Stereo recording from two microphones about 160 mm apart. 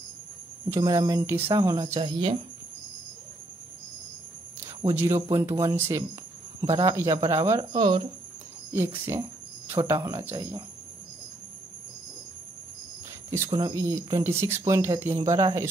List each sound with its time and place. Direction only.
0.7 s speech: 20° right (ahead or behind)
2.0 s speech: 30° right (ahead or behind)
4.8 s speech: 15° right (ahead or behind)
7.7 s speech: 35° right (ahead or behind)
8.7 s speech: 15° right (ahead or behind)
13.5 s speech: 25° right (ahead or behind)